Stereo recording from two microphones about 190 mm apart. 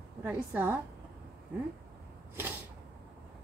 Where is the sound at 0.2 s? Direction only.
10° right (ahead or behind).